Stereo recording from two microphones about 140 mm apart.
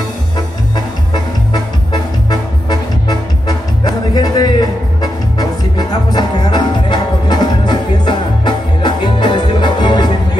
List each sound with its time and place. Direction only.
0.7 s music: 30° left (ahead or behind)